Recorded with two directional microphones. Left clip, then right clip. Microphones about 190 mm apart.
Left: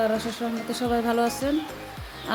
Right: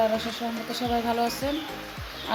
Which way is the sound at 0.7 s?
60° left (ahead or behind).